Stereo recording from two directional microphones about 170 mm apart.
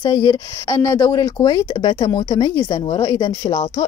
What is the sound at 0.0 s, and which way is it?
Speech, 20° left (ahead or behind).